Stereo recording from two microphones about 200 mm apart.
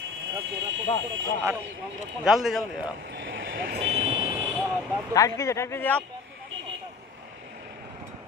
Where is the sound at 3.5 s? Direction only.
45° right (ahead or behind).